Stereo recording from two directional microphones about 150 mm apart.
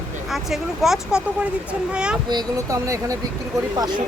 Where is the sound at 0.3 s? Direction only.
Centre (ahead or behind).